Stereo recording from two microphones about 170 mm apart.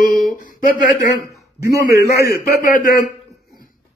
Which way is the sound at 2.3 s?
55° left (ahead or behind).